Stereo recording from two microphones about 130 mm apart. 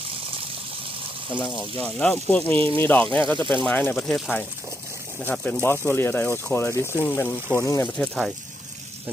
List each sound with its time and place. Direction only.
1.8 s speech: 10° left (ahead or behind)
7.9 s speech: 5° left (ahead or behind)